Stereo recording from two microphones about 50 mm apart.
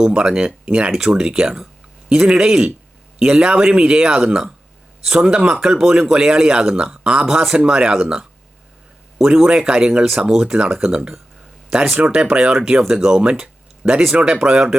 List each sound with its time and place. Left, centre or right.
0.1 s speech: centre
12.0 s speech: right